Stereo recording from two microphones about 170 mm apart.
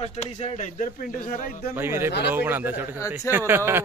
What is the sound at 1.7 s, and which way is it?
A man's voice, 15° right (ahead or behind).